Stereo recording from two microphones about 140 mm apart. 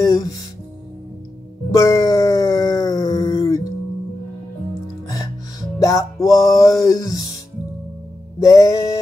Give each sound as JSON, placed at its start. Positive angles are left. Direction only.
{"t": 0.0, "sound": "music", "side_deg": 25}
{"t": 1.7, "sound": "wail", "side_deg": 25}
{"t": 5.8, "sound": "music", "side_deg": 20}
{"t": 8.4, "sound": "music", "side_deg": 20}